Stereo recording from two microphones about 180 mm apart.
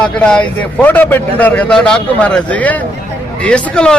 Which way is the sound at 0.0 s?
5° left (ahead or behind).